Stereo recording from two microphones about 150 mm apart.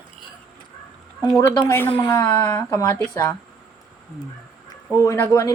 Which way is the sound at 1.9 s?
35° left (ahead or behind).